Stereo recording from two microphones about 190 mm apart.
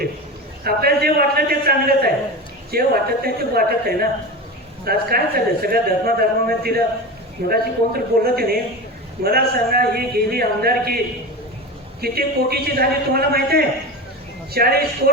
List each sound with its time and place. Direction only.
0.6 s speech: 55° right (ahead or behind)